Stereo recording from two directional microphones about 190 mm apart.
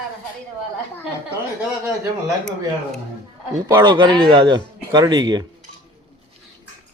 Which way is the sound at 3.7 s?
20° right (ahead or behind).